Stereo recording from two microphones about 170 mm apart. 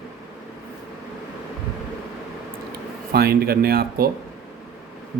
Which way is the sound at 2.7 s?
65° right (ahead or behind).